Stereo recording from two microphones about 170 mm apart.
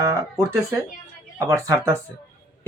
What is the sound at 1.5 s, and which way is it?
Speech, 20° right (ahead or behind).